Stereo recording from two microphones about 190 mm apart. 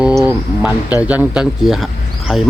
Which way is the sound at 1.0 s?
5° right (ahead or behind).